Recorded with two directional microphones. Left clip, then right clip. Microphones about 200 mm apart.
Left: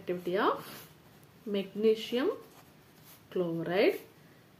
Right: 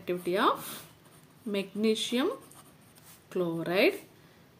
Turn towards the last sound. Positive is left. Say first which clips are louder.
# right 2 dB
turn(degrees=-35)  # may be behind; listen again after turning